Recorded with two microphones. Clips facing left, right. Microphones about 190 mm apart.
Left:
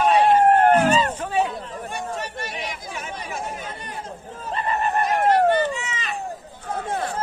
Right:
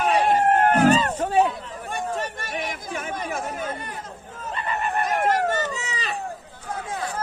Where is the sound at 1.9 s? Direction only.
50° right (ahead or behind).